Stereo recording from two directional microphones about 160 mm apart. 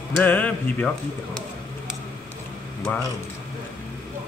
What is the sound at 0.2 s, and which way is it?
Speech, 10° left (ahead or behind).